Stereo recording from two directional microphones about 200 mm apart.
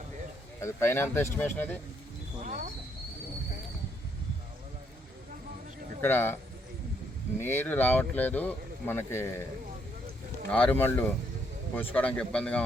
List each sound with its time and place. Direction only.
0.6 s speech: 10° left (ahead or behind)
2.4 s bird: 40° right (ahead or behind)
6.0 s speech: 10° left (ahead or behind)
7.3 s speech: 10° left (ahead or behind)
10.5 s speech: 10° left (ahead or behind)